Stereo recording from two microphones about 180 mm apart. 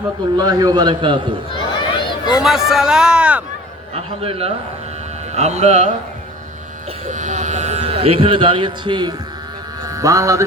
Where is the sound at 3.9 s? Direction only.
35° right (ahead or behind).